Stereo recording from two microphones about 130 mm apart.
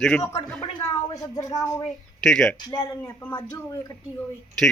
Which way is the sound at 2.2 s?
5° left (ahead or behind).